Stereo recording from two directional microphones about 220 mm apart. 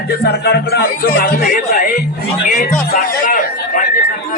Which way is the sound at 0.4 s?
45° left (ahead or behind).